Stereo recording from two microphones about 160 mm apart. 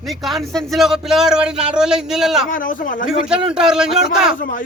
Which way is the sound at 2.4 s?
60° left (ahead or behind).